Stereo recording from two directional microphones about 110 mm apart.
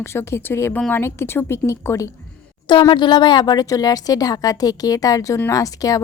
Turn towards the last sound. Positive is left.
turn(degrees=30)  # may be behind; listen again after turning